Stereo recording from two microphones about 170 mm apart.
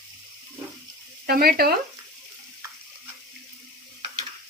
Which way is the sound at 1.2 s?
60° right (ahead or behind).